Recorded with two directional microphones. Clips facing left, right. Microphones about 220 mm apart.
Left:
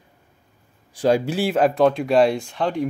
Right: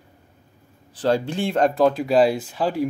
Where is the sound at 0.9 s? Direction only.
10° left (ahead or behind).